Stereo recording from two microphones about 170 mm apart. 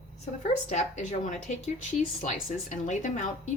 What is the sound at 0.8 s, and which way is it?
Speech, 45° left (ahead or behind).